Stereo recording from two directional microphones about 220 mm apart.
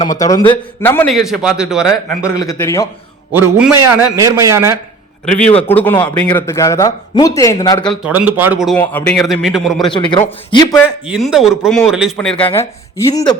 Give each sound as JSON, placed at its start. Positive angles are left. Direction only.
{"t": 0.2, "sound": "a man's voice", "side_deg": 15}
{"t": 2.0, "sound": "speech", "side_deg": 15}
{"t": 3.3, "sound": "a man's voice", "side_deg": -10}
{"t": 5.2, "sound": "a man's voice", "side_deg": 5}
{"t": 7.9, "sound": "a man's voice", "side_deg": -5}
{"t": 9.9, "sound": "speech", "side_deg": 20}
{"t": 10.8, "sound": "a man's voice", "side_deg": -5}